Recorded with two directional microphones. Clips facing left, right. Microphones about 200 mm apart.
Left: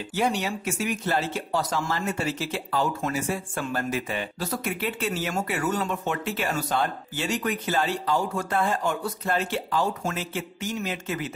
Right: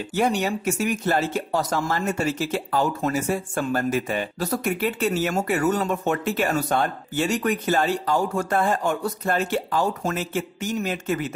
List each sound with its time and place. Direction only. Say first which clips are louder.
0.1 s speech: right 4 dB; 45° right (ahead or behind)